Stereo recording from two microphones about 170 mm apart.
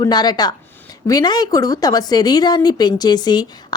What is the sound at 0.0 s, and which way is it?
A woman's voice, 25° left (ahead or behind).